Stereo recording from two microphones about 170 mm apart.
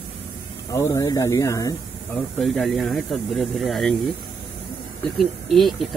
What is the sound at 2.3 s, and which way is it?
Speech, 5° left (ahead or behind).